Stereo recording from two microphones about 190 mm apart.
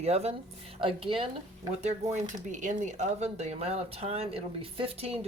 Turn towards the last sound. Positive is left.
turn(degrees=-30)  # may be behind; listen again after turning